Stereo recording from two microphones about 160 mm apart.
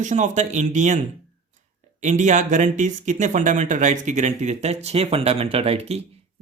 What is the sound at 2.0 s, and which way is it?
Speech, 50° right (ahead or behind).